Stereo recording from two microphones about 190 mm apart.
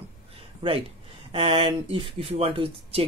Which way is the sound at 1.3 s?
30° right (ahead or behind).